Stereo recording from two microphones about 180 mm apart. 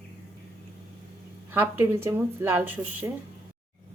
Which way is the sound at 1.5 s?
10° right (ahead or behind).